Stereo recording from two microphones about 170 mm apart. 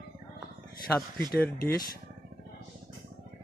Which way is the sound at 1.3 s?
Centre (ahead or behind).